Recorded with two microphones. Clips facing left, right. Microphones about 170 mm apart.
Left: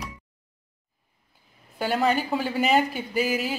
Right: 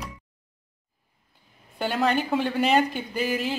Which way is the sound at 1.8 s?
Centre (ahead or behind).